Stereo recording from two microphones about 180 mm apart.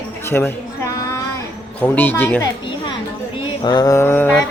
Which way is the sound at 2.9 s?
30° left (ahead or behind).